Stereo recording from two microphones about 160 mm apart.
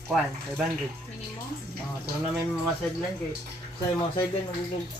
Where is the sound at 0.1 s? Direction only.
Centre (ahead or behind).